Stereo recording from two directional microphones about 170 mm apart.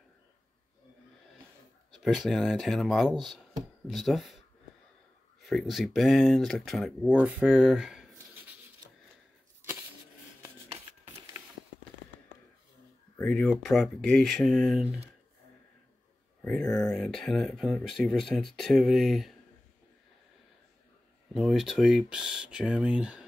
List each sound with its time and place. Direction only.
2.0 s speech: centre (ahead or behind)
5.4 s speech: centre (ahead or behind)
10.4 s a sound: 30° right (ahead or behind)
13.2 s speech: 5° left (ahead or behind)
16.4 s speech: 5° left (ahead or behind)
21.3 s speech: centre (ahead or behind)